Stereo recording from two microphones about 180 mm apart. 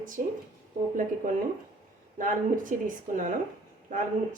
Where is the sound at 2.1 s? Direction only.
45° right (ahead or behind).